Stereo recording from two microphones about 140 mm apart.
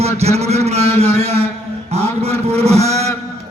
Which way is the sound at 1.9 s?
45° right (ahead or behind).